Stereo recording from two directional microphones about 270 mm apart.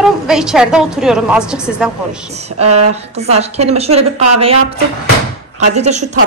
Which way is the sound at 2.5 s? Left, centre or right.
Right.